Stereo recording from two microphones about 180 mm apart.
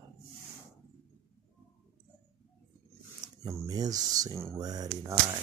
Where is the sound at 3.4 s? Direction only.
20° right (ahead or behind).